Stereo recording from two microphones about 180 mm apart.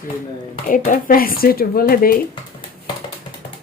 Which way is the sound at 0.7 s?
50° left (ahead or behind).